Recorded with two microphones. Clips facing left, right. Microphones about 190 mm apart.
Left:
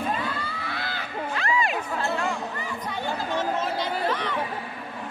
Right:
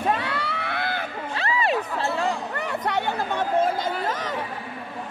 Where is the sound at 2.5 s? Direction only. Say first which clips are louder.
Right 6 dB; 70° right (ahead or behind); by 4.4 s 45° right (ahead or behind).